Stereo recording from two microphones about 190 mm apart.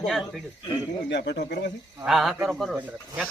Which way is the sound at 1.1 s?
65° left (ahead or behind).